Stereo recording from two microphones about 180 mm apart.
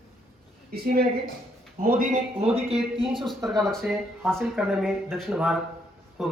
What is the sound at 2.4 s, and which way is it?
Speech, 35° right (ahead or behind).